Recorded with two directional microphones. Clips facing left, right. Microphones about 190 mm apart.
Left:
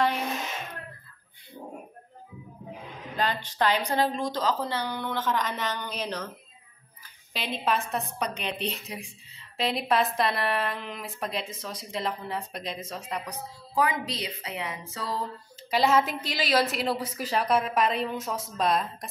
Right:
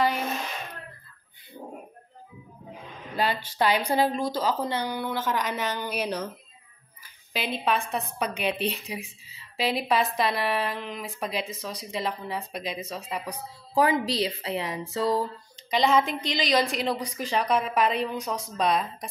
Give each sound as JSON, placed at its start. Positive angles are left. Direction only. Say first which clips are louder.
{"t": 3.2, "sound": "speech", "louder": "right 2 dB", "side_deg": -10}
{"t": 7.3, "sound": "a woman's voice", "louder": "right 1 dB", "side_deg": 0}
{"t": 13.7, "sound": "a woman's voice", "louder": "right 5 dB", "side_deg": -30}
{"t": 15.7, "sound": "a woman's voice", "louder": "right 1 dB", "side_deg": 5}